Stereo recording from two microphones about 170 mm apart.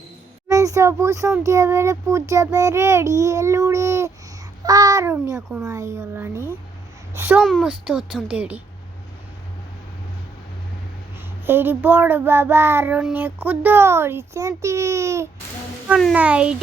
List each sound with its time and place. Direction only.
0.4 s child singing: 20° right (ahead or behind)
4.6 s a child's voice: 20° right (ahead or behind)
5.6 s child singing: 20° right (ahead or behind)
7.4 s speech: centre (ahead or behind)
11.4 s child singing: 10° right (ahead or behind)
15.9 s speech: centre (ahead or behind)
16.1 s child singing: 5° right (ahead or behind)